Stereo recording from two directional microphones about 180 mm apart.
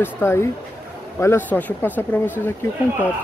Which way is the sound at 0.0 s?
15° left (ahead or behind).